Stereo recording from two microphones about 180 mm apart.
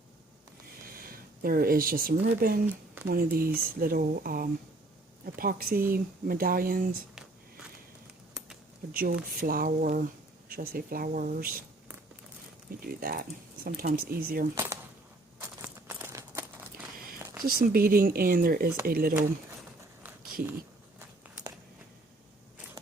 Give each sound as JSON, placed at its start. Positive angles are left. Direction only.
{"t": 0.9, "sound": "speech", "side_deg": -55}
{"t": 8.9, "sound": "speech", "side_deg": -55}
{"t": 12.8, "sound": "speech", "side_deg": -55}
{"t": 14.5, "sound": "a sound", "side_deg": -15}
{"t": 17.4, "sound": "speech", "side_deg": -55}
{"t": 21.2, "sound": "biting", "side_deg": -10}